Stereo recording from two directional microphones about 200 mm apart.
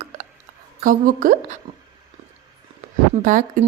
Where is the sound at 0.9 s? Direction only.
45° right (ahead or behind).